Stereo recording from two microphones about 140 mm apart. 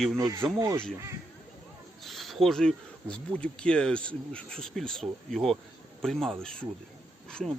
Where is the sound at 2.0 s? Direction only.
Centre (ahead or behind).